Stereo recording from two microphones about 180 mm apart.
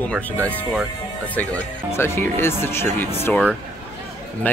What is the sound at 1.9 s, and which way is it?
Speech, 15° left (ahead or behind).